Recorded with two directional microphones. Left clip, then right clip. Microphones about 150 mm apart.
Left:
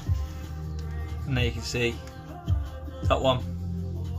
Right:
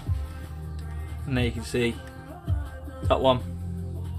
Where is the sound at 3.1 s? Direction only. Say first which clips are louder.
Right 2 dB; 50° right (ahead or behind).